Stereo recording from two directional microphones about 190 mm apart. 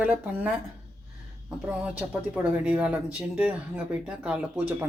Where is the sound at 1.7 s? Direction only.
5° right (ahead or behind).